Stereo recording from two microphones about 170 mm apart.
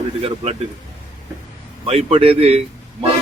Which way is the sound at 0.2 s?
35° right (ahead or behind).